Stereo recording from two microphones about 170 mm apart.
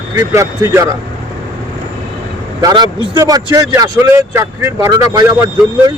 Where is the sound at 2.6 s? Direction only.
20° right (ahead or behind).